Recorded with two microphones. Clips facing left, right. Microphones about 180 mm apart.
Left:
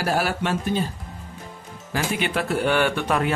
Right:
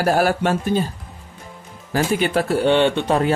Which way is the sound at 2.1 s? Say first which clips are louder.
Right 5 dB; 40° right (ahead or behind).